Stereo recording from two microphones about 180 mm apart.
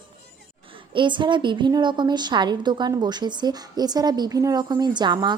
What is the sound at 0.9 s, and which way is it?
A woman's voice, 25° right (ahead or behind).